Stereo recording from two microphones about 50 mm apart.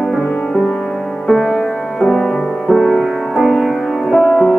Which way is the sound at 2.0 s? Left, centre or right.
Centre.